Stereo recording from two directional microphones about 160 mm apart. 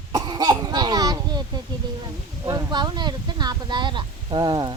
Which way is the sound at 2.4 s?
25° right (ahead or behind).